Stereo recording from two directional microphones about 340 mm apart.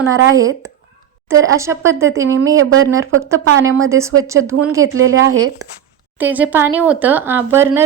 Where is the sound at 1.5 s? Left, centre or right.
Centre.